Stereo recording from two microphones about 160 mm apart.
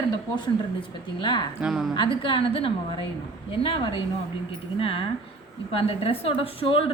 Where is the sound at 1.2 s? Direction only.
30° left (ahead or behind).